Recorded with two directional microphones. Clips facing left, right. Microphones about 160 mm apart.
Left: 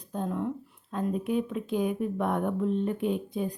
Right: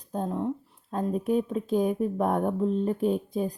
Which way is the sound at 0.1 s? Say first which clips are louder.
Right 2 dB; 35° right (ahead or behind).